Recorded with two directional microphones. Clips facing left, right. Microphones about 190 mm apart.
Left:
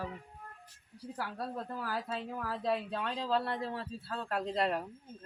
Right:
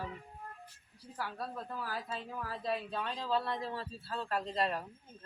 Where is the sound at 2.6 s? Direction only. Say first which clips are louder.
Left 3 dB; 75° left (ahead or behind).